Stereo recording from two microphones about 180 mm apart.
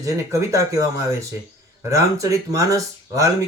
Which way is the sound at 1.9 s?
15° right (ahead or behind).